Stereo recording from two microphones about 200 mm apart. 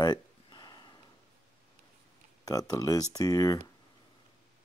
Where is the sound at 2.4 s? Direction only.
15° left (ahead or behind).